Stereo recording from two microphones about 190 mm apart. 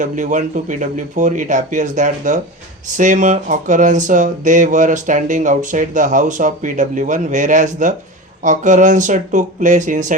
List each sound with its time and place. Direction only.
0.0 s speech: 40° right (ahead or behind)